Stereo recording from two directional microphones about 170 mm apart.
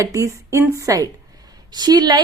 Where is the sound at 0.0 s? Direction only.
20° right (ahead or behind).